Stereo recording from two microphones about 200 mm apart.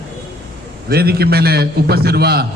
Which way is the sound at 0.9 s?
50° right (ahead or behind).